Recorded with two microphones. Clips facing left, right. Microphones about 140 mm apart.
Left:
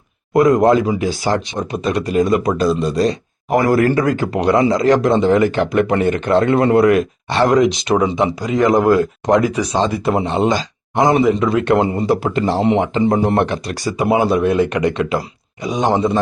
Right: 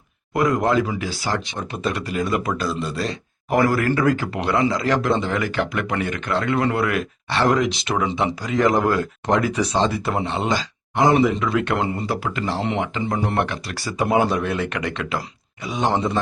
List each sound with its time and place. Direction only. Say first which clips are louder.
0.3 s a man's voice: left 7 dB; 20° left (ahead or behind)
3.7 s a man's voice: left 5 dB; 30° left (ahead or behind); by 16.2 s 15° left (ahead or behind)